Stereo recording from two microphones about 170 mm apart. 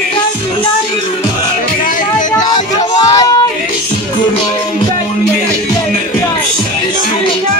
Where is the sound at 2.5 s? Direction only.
25° left (ahead or behind).